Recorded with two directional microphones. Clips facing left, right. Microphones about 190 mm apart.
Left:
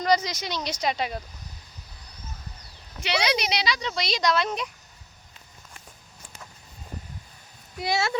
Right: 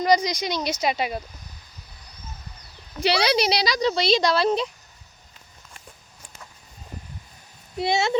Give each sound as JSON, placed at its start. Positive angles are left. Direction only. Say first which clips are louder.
{"t": 0.0, "sound": "speech", "louder": "right 3 dB", "side_deg": -15}
{"t": 3.0, "sound": "speech", "louder": "right 5 dB", "side_deg": -35}
{"t": 7.8, "sound": "speech", "louder": "right 4 dB", "side_deg": -25}